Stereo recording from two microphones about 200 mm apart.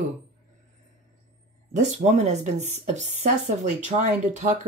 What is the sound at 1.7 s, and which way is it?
Speech, 35° right (ahead or behind).